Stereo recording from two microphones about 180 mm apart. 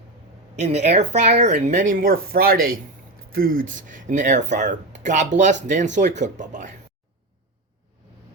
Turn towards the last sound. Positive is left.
turn(degrees=-45)  # may be behind; listen again after turning